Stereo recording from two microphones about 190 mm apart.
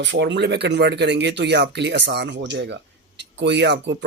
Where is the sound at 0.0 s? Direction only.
70° right (ahead or behind).